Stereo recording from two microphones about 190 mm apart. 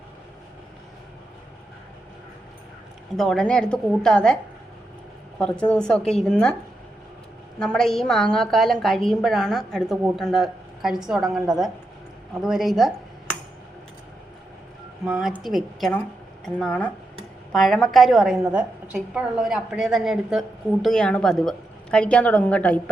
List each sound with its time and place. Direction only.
3.2 s a woman's voice: 5° left (ahead or behind)
5.4 s a woman's voice: 5° left (ahead or behind)
7.6 s a woman's voice: 5° left (ahead or behind)
15.0 s a woman's voice: 5° right (ahead or behind)